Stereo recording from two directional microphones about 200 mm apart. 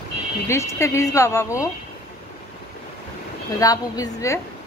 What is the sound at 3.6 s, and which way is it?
Speech, 20° left (ahead or behind).